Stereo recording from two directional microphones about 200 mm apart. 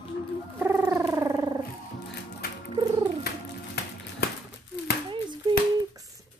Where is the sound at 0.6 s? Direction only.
10° right (ahead or behind).